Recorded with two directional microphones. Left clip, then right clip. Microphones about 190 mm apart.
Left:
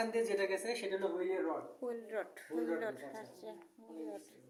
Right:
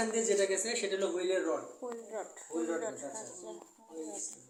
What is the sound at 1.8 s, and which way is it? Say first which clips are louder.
Speech: even; 35° left (ahead or behind).